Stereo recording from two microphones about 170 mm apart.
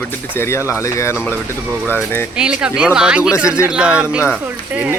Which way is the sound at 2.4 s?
5° right (ahead or behind).